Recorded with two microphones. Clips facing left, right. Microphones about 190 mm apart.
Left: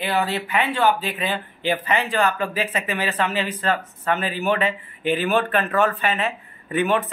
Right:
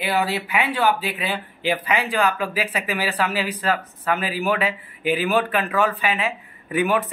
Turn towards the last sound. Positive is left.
turn(degrees=-10)  # may be behind; listen again after turning